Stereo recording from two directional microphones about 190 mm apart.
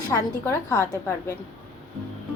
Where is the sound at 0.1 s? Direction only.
15° left (ahead or behind).